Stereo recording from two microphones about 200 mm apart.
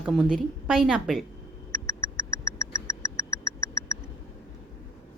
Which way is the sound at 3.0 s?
15° left (ahead or behind).